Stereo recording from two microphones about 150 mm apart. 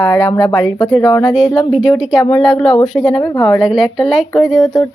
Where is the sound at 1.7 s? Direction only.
5° right (ahead or behind).